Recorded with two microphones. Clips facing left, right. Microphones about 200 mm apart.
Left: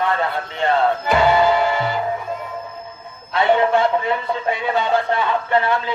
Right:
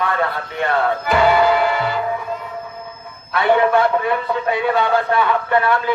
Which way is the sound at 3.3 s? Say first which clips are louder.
Right 1 dB; 25° left (ahead or behind).